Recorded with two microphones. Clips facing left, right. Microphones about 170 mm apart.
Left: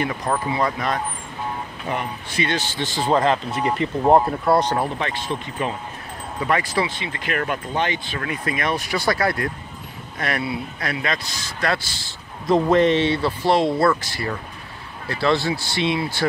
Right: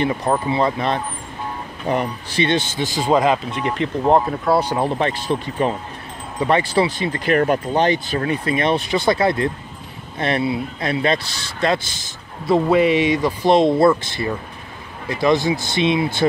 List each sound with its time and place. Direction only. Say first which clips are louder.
0.0 s speech: right 4 dB; 25° right (ahead or behind)
2.8 s speech: right 1 dB; 10° right (ahead or behind)
3.6 s speech: even; 5° left (ahead or behind)
4.8 s speech: right 5 dB; 35° right (ahead or behind)
12.4 s speech: right 1 dB; 5° right (ahead or behind)